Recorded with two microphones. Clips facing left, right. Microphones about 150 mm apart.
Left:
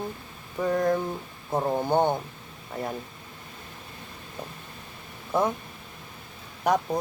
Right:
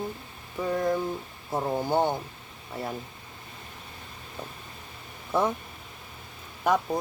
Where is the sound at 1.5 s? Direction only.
15° left (ahead or behind).